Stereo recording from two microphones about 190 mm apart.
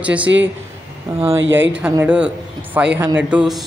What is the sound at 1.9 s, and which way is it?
Speech, 10° right (ahead or behind).